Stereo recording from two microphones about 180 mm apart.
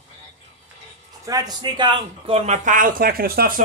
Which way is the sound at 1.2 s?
20° right (ahead or behind).